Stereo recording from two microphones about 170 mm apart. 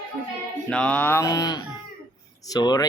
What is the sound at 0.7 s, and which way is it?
Speech, 5° left (ahead or behind).